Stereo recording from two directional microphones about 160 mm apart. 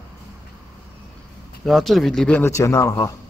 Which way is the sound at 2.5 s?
20° left (ahead or behind).